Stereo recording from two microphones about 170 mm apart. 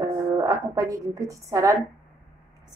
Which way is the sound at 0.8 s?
20° right (ahead or behind).